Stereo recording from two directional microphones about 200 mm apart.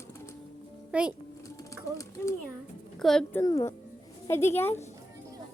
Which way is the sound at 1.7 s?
15° left (ahead or behind).